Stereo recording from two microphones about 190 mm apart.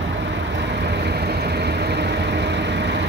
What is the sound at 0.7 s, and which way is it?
Vehicle, 60° right (ahead or behind).